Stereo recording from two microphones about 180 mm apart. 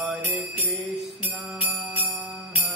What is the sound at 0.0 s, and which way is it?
Music, 10° right (ahead or behind).